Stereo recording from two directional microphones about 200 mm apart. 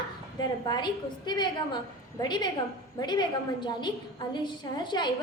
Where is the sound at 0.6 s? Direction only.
20° left (ahead or behind).